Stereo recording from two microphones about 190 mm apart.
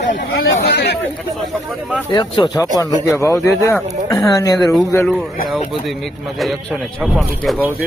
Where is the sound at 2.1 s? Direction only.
25° left (ahead or behind).